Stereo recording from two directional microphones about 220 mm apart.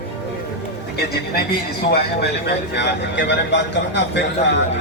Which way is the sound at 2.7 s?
50° left (ahead or behind).